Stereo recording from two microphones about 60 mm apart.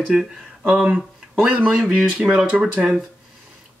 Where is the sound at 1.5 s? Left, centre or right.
Right.